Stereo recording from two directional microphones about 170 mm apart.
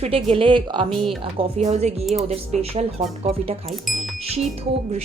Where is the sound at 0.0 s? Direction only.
35° right (ahead or behind).